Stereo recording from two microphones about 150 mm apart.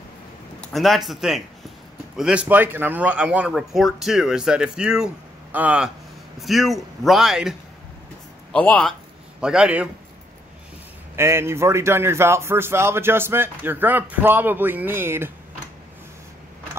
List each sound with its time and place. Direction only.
0.6 s a man's voice: centre (ahead or behind)
8.5 s speech: 10° left (ahead or behind)
9.4 s a man's voice: 5° right (ahead or behind)
11.1 s a man's voice: 15° right (ahead or behind)